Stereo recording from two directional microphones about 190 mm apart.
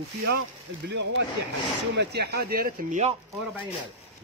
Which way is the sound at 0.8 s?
70° right (ahead or behind).